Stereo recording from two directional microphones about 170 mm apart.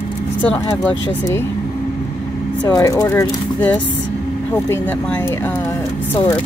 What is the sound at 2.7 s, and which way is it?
Speech, 20° left (ahead or behind).